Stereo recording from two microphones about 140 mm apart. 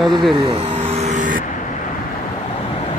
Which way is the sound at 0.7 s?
50° right (ahead or behind).